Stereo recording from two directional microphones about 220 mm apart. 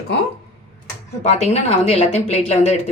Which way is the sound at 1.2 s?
30° left (ahead or behind).